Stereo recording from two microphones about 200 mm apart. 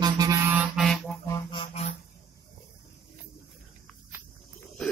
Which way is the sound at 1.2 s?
20° left (ahead or behind).